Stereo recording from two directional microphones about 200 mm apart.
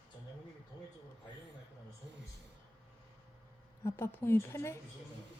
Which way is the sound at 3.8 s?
10° left (ahead or behind).